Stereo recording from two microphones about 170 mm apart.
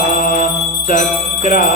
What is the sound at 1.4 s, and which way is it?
Music, 50° left (ahead or behind).